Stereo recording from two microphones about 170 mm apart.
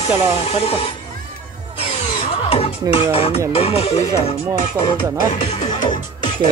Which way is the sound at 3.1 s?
35° left (ahead or behind).